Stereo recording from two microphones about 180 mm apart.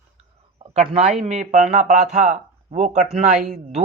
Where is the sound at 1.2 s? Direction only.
40° right (ahead or behind).